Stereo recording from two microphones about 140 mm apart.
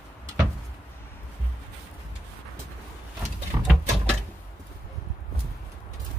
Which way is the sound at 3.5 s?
25° right (ahead or behind).